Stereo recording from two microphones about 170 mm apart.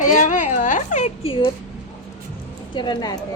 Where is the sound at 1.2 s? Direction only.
30° left (ahead or behind).